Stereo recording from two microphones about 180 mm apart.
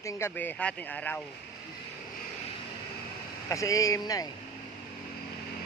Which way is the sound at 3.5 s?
15° left (ahead or behind).